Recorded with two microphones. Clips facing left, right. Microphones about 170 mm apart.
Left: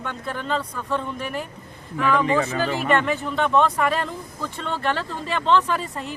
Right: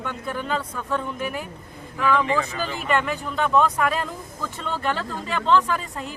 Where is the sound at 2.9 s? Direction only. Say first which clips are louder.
Right 1 dB; centre (ahead or behind).